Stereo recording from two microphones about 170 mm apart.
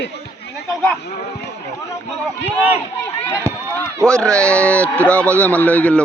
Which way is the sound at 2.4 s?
10° right (ahead or behind).